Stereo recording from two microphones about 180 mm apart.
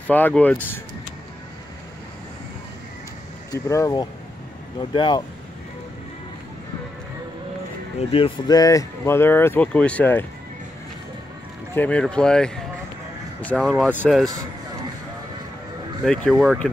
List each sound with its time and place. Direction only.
0.0 s speech: 10° left (ahead or behind)
3.5 s speech: 15° left (ahead or behind)
8.1 s speech: 25° left (ahead or behind); by 10.2 s 10° left (ahead or behind)
11.7 s speech: 10° left (ahead or behind)
16.1 s speech: centre (ahead or behind)